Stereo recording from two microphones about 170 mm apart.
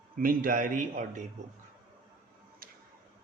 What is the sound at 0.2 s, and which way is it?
A man's voice, 55° right (ahead or behind).